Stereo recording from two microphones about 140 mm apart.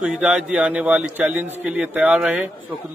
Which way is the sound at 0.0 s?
5° right (ahead or behind).